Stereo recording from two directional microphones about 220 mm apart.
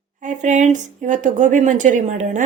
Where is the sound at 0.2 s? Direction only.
35° right (ahead or behind).